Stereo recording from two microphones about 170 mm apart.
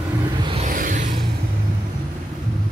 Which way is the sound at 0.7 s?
50° right (ahead or behind).